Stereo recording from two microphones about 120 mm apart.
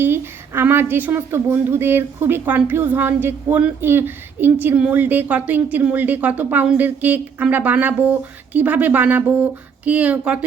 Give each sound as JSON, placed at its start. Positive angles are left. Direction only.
{"t": 0.0, "sound": "a woman's voice", "side_deg": -20}